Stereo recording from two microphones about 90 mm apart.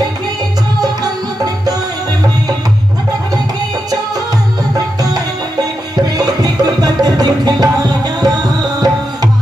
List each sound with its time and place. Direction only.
4.7 s music: 45° right (ahead or behind)